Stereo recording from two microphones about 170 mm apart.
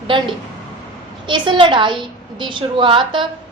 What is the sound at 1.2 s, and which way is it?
A woman's voice, 30° right (ahead or behind).